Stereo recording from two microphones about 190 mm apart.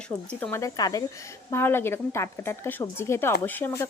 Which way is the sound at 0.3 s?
5° left (ahead or behind).